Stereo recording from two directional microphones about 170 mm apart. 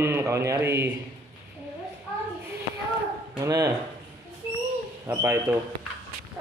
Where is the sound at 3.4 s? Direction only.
20° right (ahead or behind).